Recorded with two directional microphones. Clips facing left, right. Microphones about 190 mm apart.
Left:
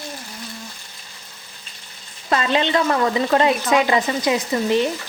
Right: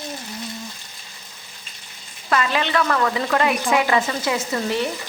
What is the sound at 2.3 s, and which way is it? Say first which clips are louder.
Speech: left 2 dB; 25° left (ahead or behind).